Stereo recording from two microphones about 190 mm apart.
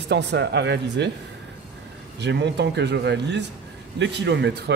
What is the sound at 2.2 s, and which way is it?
Speech, 65° right (ahead or behind).